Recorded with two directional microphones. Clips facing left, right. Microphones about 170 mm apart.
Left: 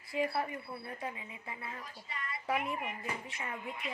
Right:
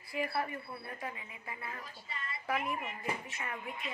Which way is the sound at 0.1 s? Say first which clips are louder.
Left 2 dB; 20° left (ahead or behind).